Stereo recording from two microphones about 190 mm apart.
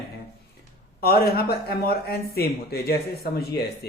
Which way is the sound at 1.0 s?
55° left (ahead or behind).